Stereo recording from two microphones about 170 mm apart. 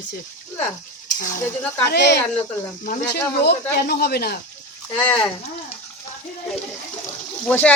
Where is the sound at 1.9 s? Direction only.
85° left.